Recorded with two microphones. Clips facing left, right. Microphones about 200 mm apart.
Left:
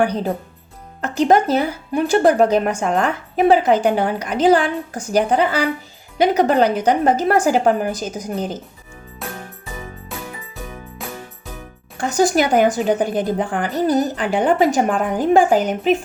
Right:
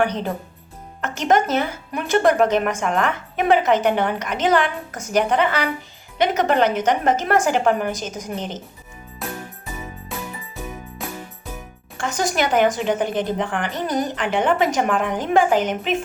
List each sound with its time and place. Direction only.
1.0 s speech: 35° left (ahead or behind)
9.2 s music: centre (ahead or behind)
11.9 s speech: 35° left (ahead or behind)